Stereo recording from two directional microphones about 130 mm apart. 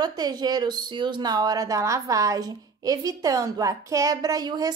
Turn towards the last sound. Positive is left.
turn(degrees=-30)  # may be behind; listen again after turning